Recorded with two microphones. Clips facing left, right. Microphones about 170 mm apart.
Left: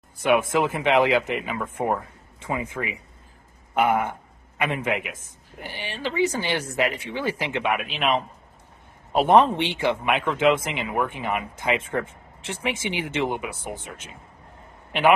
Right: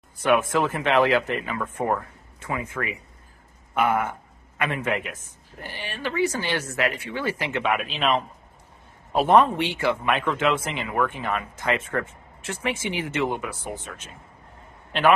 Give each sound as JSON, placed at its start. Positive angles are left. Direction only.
{"t": 0.2, "sound": "speech", "side_deg": 15}
{"t": 14.9, "sound": "a man's voice", "side_deg": 15}